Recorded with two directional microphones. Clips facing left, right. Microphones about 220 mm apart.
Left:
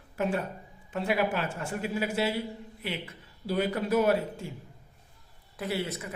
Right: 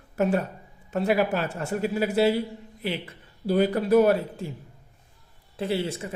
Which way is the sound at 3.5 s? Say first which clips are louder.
Right 7 dB; 35° right (ahead or behind).